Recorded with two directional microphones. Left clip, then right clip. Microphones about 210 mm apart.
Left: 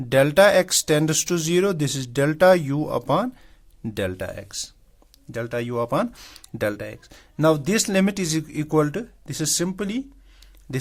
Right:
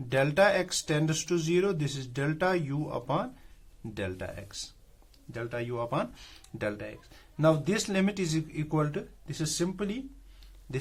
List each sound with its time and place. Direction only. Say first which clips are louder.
0.1 s speech: left 9 dB; 45° left (ahead or behind)